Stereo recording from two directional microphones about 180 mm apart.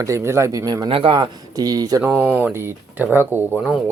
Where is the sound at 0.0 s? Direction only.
15° right (ahead or behind).